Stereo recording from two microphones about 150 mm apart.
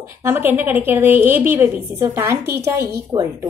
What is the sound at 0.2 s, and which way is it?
A woman's voice, 15° right (ahead or behind).